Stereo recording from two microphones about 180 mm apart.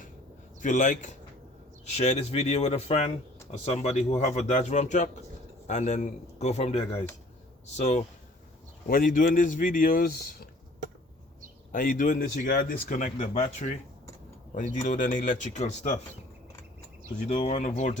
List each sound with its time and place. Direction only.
0.6 s speech: 45° left (ahead or behind)
8.9 s speech: 50° left (ahead or behind)
11.7 s speech: 50° left (ahead or behind)
17.2 s speech: 40° left (ahead or behind)